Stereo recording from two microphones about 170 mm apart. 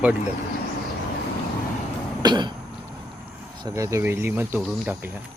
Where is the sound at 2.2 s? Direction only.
25° right (ahead or behind).